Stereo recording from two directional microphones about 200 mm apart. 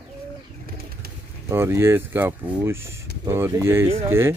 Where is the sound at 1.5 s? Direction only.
10° right (ahead or behind).